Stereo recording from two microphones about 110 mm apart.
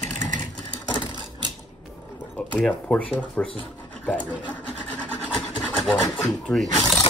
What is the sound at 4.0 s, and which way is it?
Sewing machine, 15° left (ahead or behind).